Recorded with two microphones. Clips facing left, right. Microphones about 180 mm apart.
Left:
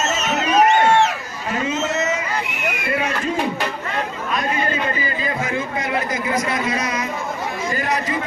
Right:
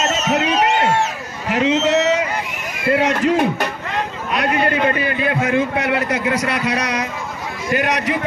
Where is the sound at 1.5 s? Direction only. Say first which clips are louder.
Right 7 dB; 75° right (ahead or behind).